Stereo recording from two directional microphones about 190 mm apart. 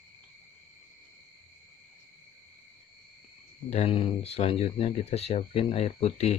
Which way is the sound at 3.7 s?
30° left (ahead or behind).